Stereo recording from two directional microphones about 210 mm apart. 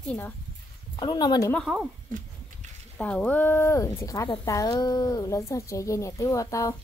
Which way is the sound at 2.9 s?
5° left (ahead or behind).